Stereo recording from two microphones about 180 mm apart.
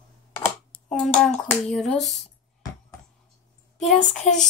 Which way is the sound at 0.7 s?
5° left (ahead or behind).